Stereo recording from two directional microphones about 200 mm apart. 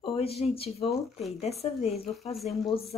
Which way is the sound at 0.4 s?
30° left (ahead or behind).